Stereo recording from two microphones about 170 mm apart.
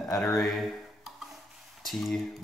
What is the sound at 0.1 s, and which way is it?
Speech, 20° left (ahead or behind).